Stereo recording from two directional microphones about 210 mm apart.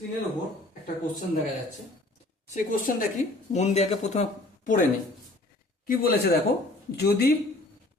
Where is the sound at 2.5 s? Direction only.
40° left (ahead or behind).